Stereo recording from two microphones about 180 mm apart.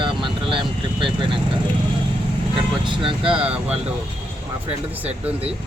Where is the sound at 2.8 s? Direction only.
25° right (ahead or behind).